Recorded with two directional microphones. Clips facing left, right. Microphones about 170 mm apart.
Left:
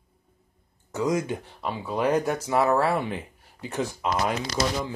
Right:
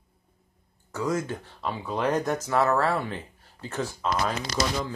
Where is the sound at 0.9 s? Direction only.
15° left (ahead or behind).